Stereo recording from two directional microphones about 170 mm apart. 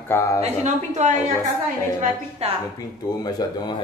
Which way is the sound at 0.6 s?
45° right (ahead or behind).